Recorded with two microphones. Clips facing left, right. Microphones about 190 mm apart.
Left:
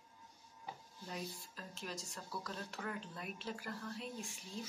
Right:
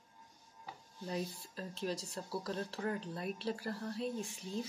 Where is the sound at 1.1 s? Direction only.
35° right (ahead or behind).